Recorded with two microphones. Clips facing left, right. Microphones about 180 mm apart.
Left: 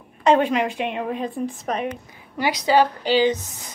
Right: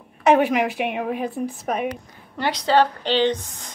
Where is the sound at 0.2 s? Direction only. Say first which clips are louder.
Right 1 dB; 10° right (ahead or behind).